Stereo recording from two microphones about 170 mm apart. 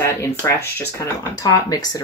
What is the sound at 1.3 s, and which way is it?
Speech, 20° left (ahead or behind).